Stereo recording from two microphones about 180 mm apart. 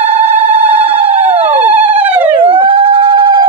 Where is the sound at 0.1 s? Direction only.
30° right (ahead or behind).